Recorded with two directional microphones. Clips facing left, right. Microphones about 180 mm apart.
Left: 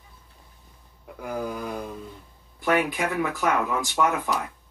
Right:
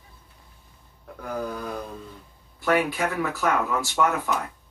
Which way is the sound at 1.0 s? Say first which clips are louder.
Even; 10° left (ahead or behind).